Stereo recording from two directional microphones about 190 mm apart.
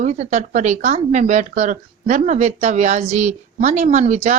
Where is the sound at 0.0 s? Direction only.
35° right (ahead or behind).